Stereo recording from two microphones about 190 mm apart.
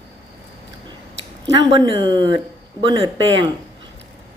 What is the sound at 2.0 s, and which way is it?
A woman's voice, 20° right (ahead or behind).